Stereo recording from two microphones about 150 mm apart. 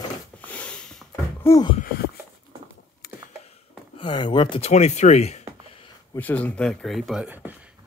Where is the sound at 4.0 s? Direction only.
30° left (ahead or behind).